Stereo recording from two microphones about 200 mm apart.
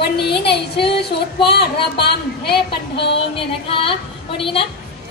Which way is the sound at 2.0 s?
55° left (ahead or behind).